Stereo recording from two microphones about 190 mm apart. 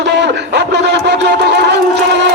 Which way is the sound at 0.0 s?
65° right (ahead or behind).